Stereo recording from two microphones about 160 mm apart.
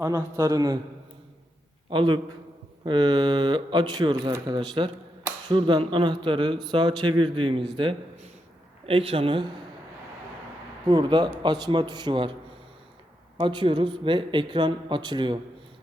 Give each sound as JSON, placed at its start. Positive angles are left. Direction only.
{"t": 0.0, "sound": "speech", "side_deg": -20}
{"t": 1.9, "sound": "speech", "side_deg": -30}
{"t": 10.8, "sound": "speech", "side_deg": -30}